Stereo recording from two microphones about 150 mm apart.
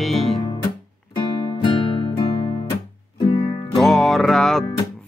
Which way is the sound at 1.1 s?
30° left (ahead or behind).